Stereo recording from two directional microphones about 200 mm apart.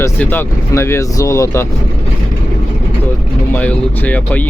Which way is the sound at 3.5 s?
5° left (ahead or behind).